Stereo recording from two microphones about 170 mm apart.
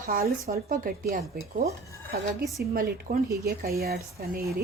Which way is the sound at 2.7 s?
60° right (ahead or behind).